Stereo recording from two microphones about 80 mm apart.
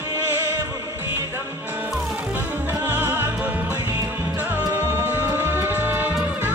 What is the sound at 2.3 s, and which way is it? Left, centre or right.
Music, right.